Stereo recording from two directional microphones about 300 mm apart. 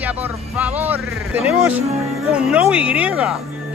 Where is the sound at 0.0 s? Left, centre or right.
Centre.